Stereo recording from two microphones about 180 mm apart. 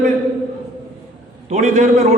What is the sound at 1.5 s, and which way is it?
Speech, 40° right (ahead or behind).